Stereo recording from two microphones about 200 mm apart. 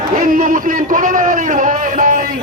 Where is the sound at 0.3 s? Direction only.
40° right (ahead or behind).